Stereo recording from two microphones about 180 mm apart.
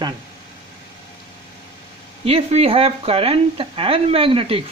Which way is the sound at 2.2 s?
35° right (ahead or behind).